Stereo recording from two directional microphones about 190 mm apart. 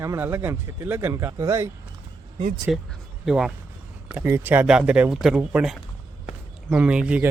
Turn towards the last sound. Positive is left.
turn(degrees=-5)  # may be behind; listen again after turning